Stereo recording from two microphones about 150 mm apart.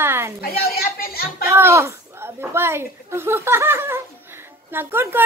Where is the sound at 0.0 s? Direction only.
15° right (ahead or behind).